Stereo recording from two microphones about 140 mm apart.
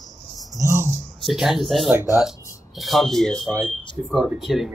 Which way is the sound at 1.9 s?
15° right (ahead or behind).